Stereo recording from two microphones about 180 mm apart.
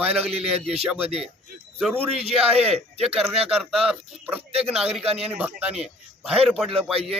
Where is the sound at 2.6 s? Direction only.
35° right (ahead or behind).